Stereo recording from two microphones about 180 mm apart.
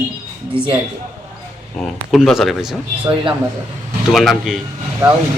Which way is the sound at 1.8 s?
Centre (ahead or behind).